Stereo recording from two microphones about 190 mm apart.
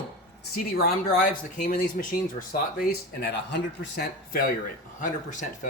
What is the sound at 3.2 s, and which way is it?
A man's voice, 65° left (ahead or behind).